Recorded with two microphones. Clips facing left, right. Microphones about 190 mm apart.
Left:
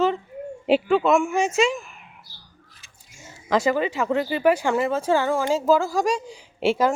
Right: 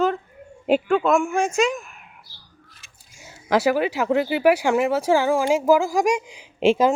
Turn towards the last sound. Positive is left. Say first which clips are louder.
# right 3 dB
turn(degrees=-20)  # may be behind; listen again after turning